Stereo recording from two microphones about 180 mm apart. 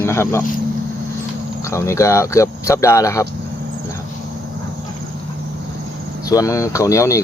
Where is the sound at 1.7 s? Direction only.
15° left (ahead or behind).